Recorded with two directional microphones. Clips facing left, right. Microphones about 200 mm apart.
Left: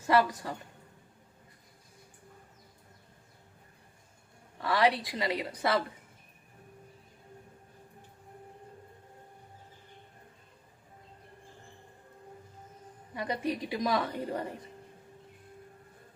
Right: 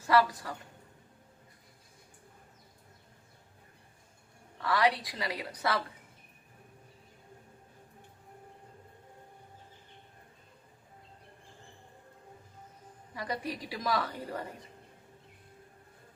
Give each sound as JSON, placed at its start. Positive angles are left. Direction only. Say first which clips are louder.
{"t": 0.1, "sound": "a woman's voice", "louder": "left 1 dB", "side_deg": 25}
{"t": 4.6, "sound": "a woman's voice", "louder": "left 2 dB", "side_deg": 25}
{"t": 13.1, "sound": "a woman's voice", "louder": "left 4 dB", "side_deg": 20}